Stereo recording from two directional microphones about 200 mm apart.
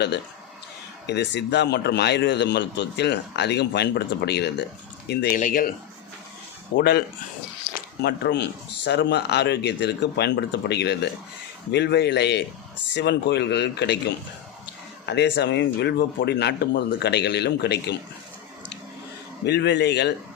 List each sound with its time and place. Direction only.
1.0 s a man's voice: 60° left (ahead or behind)
5.4 s speech: 45° left (ahead or behind)
6.7 s a man's voice: 55° left (ahead or behind)
15.0 s a man's voice: 55° left (ahead or behind)
19.5 s a man's voice: 60° left (ahead or behind)